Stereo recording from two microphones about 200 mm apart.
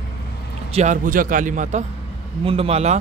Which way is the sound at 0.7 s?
40° right (ahead or behind).